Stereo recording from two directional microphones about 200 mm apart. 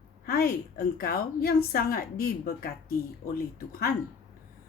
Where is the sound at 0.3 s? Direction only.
50° left (ahead or behind).